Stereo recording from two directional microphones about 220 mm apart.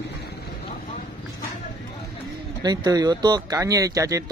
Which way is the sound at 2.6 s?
15° right (ahead or behind).